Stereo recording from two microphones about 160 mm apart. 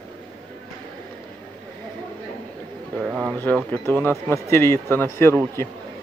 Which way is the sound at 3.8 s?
15° left (ahead or behind).